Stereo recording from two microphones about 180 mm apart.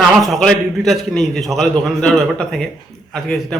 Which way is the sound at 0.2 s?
Centre (ahead or behind).